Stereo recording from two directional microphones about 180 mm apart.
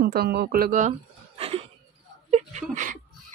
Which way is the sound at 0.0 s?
60° right (ahead or behind).